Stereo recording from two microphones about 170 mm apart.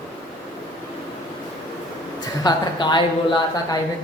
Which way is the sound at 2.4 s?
25° left (ahead or behind).